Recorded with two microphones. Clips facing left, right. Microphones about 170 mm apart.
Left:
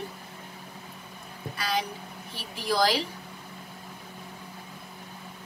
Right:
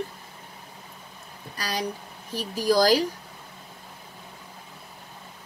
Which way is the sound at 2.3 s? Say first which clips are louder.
Right 6 dB; 40° right (ahead or behind).